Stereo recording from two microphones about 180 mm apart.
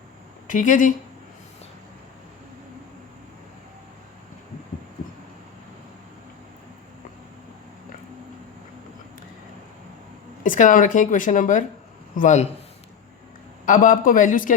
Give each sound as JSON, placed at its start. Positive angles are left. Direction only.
{"t": 0.4, "sound": "speech", "side_deg": 45}
{"t": 10.4, "sound": "speech", "side_deg": 50}
{"t": 13.7, "sound": "speech", "side_deg": 45}